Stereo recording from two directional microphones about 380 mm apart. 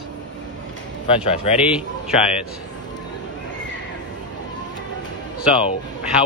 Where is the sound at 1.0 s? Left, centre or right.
Centre.